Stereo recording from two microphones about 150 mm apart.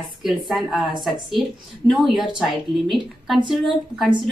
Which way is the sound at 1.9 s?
Centre (ahead or behind).